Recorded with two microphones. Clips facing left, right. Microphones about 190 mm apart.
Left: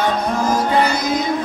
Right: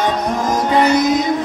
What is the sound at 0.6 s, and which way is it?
Music, 20° right (ahead or behind).